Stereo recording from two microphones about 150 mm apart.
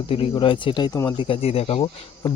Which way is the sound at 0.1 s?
35° left (ahead or behind).